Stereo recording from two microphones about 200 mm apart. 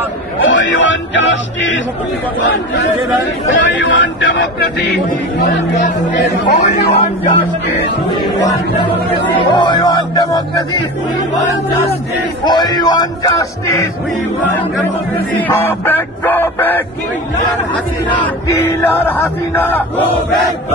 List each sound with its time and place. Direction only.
0.4 s speech: 70° left (ahead or behind)
3.5 s speech: 65° left (ahead or behind)
6.5 s speech: 35° left (ahead or behind)
9.5 s speech: 20° left (ahead or behind)
12.4 s speech: 20° left (ahead or behind)
15.4 s a sound: 10° left (ahead or behind)
18.2 s a sound: 10° left (ahead or behind)